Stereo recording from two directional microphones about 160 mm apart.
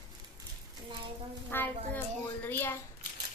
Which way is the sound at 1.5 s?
15° left (ahead or behind).